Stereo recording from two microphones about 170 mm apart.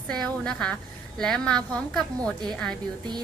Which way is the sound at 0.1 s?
5° left (ahead or behind).